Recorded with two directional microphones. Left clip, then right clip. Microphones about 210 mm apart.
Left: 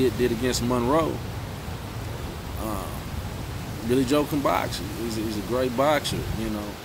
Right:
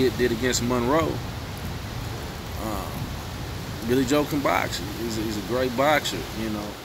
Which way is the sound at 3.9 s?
5° left (ahead or behind).